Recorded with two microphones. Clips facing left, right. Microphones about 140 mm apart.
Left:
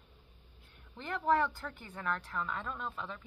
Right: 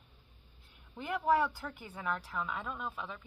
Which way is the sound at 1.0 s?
10° right (ahead or behind).